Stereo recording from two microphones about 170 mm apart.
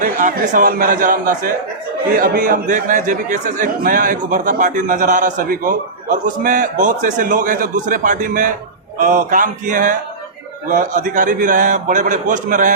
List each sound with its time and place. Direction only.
0.0 s a man's voice: 50° right (ahead or behind)